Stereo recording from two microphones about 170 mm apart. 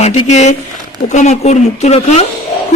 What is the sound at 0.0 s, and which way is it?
A man's voice, 40° left (ahead or behind).